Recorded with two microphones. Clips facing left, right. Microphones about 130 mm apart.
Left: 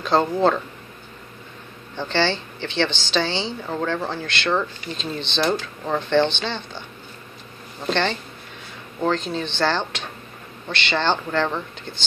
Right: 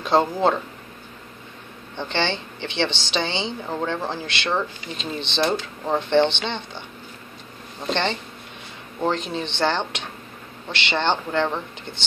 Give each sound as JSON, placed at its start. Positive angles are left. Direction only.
{"t": 0.0, "sound": "speech", "side_deg": -15}
{"t": 2.0, "sound": "speech", "side_deg": -20}
{"t": 7.9, "sound": "speech", "side_deg": -20}